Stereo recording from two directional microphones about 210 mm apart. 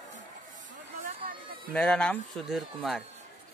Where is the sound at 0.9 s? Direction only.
40° right (ahead or behind).